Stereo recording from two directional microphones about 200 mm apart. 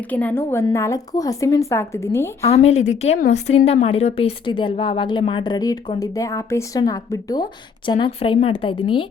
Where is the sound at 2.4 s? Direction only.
30° left (ahead or behind).